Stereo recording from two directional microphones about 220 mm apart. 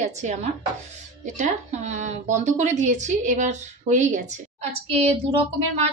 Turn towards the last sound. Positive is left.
turn(degrees=-30)  # may be behind; listen again after turning